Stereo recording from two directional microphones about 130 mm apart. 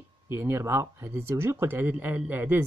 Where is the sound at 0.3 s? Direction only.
20° right (ahead or behind).